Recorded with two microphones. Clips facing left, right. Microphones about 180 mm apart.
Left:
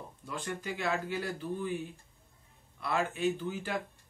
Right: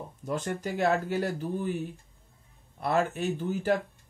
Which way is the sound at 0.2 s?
45° right (ahead or behind).